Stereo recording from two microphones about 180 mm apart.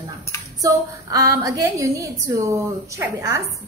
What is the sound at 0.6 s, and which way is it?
A woman's voice, 20° right (ahead or behind).